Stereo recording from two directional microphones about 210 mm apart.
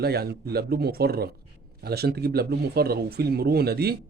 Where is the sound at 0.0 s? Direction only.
50° right (ahead or behind).